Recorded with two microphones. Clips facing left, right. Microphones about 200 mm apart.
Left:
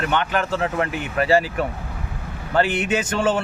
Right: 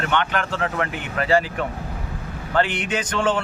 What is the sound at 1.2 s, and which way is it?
Speech, 10° left (ahead or behind).